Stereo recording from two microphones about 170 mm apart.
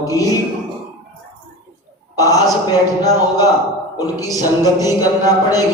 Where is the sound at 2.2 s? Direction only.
20° left (ahead or behind).